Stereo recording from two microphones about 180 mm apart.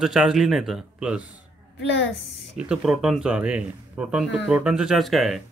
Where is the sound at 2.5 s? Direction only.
5° right (ahead or behind).